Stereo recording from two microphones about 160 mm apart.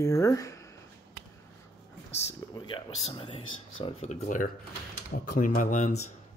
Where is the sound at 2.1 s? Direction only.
40° left (ahead or behind).